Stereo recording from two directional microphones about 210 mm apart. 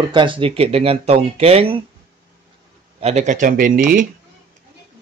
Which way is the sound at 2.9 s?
30° right (ahead or behind).